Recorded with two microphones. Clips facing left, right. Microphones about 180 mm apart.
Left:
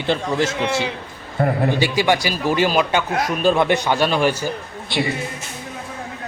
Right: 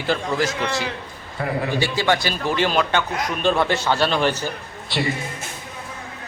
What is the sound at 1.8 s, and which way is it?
A man's voice, 15° left (ahead or behind).